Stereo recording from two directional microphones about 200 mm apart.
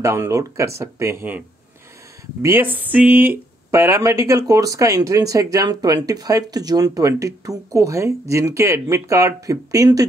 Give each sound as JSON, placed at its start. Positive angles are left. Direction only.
{"t": 0.0, "sound": "speech", "side_deg": -15}
{"t": 2.4, "sound": "speech", "side_deg": -10}